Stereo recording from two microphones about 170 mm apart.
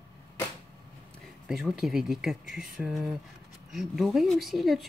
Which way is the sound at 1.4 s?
5° right (ahead or behind).